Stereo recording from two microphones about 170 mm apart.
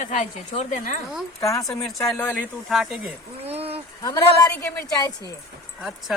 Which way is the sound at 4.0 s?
25° left (ahead or behind).